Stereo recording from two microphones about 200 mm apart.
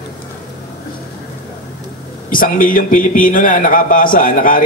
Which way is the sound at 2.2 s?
45° left (ahead or behind).